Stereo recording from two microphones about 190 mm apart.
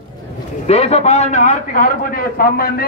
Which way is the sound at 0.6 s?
35° left (ahead or behind).